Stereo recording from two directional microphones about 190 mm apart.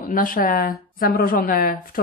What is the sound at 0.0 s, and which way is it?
Speech, 45° left (ahead or behind).